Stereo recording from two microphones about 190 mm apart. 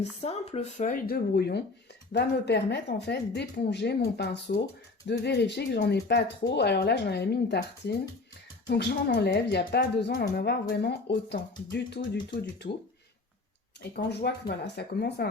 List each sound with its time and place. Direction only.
0.0 s speech: 35° left (ahead or behind); by 11.3 s 60° left (ahead or behind)
13.9 s speech: 60° left (ahead or behind)